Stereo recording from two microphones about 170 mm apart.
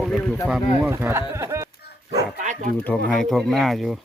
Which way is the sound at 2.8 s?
5° left (ahead or behind).